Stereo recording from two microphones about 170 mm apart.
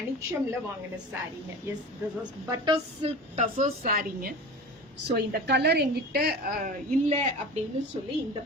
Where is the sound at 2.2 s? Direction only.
30° right (ahead or behind); by 4.3 s 55° right (ahead or behind).